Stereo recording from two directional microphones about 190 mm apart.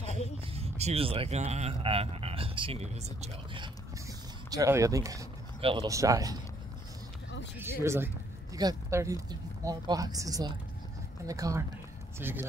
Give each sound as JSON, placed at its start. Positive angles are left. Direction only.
{"t": 0.0, "sound": "speech", "side_deg": -35}
{"t": 4.5, "sound": "speech", "side_deg": -15}
{"t": 5.6, "sound": "speech", "side_deg": -30}
{"t": 5.9, "sound": "speech", "side_deg": -15}
{"t": 7.8, "sound": "speech", "side_deg": -15}